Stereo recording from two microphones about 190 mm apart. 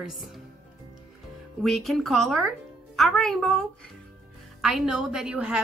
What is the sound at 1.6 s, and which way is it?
A woman's voice, centre (ahead or behind).